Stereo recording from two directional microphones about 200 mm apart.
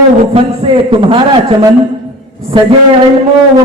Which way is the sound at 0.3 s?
25° right (ahead or behind).